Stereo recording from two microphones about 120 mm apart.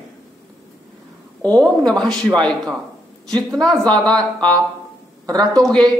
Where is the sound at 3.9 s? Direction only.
10° left (ahead or behind).